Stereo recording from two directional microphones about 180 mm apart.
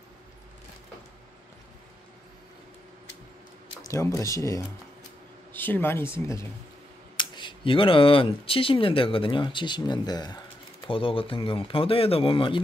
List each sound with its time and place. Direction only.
3.8 s speech: 15° left (ahead or behind)
7.2 s speech: 25° left (ahead or behind)